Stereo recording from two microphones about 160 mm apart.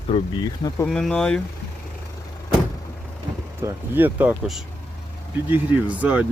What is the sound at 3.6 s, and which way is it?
Speech, 10° right (ahead or behind).